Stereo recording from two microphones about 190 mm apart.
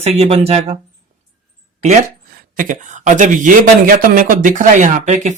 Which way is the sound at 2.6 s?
40° right (ahead or behind).